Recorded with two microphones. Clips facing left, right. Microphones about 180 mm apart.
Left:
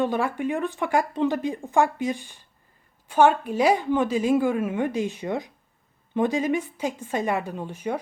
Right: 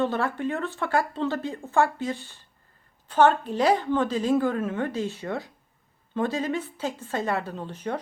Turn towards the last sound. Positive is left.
turn(degrees=10)  # may be behind; listen again after turning